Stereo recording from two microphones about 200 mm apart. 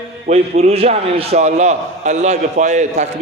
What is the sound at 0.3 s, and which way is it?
A man's voice, 30° right (ahead or behind).